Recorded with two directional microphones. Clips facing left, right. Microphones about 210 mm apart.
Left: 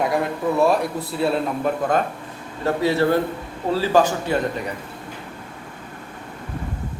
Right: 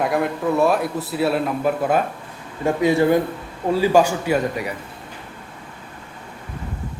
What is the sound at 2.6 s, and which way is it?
A man's voice, 15° right (ahead or behind).